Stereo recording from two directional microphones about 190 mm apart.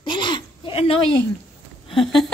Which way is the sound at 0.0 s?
25° left (ahead or behind).